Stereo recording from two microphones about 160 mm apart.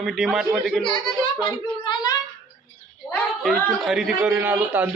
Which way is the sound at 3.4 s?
Centre (ahead or behind).